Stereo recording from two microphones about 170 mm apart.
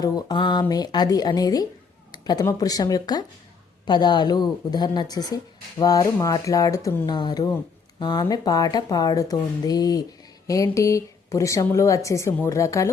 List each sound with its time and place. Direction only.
0.0 s speech: 25° left (ahead or behind)